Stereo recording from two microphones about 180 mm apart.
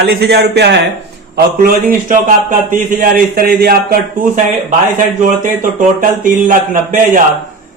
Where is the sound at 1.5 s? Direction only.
55° right (ahead or behind).